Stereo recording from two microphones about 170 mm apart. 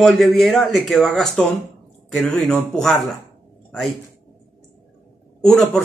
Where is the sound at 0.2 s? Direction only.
Centre (ahead or behind).